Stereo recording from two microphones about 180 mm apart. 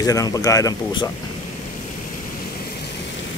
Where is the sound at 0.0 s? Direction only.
20° left (ahead or behind).